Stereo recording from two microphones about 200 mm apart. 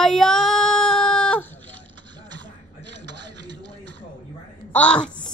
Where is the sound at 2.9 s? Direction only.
60° right (ahead or behind).